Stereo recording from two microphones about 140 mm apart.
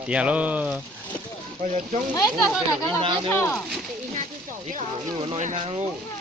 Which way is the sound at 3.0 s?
35° right (ahead or behind).